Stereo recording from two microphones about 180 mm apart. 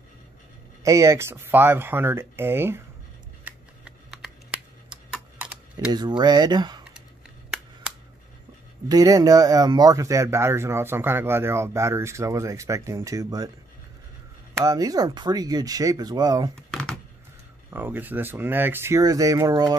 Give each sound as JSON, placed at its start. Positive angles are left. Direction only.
{"t": 0.8, "sound": "speech", "side_deg": -15}
{"t": 3.4, "sound": "a sound", "side_deg": -5}
{"t": 5.1, "sound": "typing", "side_deg": -5}
{"t": 5.9, "sound": "speech", "side_deg": -25}
{"t": 8.8, "sound": "speech", "side_deg": -20}
{"t": 14.5, "sound": "speech", "side_deg": -20}
{"t": 16.5, "sound": "a sound", "side_deg": 5}
{"t": 17.6, "sound": "speech", "side_deg": -10}